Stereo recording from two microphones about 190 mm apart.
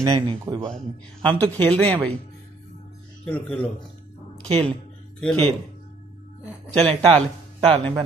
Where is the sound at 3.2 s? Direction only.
10° left (ahead or behind).